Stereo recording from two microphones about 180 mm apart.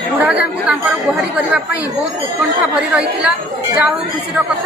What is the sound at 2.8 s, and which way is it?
A man's voice, 5° right (ahead or behind).